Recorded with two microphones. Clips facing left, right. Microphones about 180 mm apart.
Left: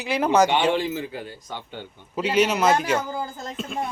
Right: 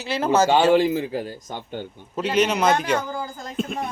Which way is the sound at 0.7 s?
35° right (ahead or behind).